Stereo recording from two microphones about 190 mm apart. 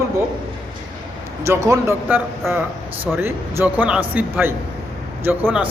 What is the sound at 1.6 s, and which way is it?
A man's voice, 15° right (ahead or behind).